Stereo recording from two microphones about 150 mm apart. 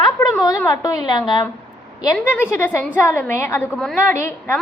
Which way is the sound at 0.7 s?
25° left (ahead or behind).